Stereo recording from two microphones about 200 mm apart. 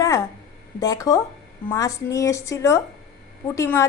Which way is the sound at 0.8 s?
15° left (ahead or behind).